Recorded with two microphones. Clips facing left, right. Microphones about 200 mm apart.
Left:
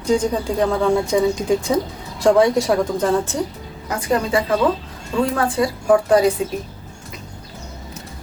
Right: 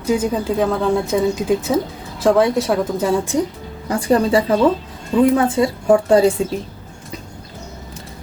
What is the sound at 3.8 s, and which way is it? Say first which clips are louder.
Speech: right 5 dB; 30° right (ahead or behind).